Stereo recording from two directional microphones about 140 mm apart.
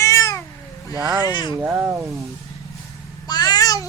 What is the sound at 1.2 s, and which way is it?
Speech, 35° left (ahead or behind).